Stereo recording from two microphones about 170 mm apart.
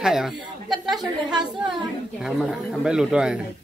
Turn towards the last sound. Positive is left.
turn(degrees=-5)  # may be behind; listen again after turning